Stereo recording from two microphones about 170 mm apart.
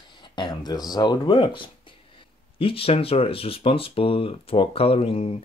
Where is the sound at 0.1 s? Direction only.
25° left (ahead or behind).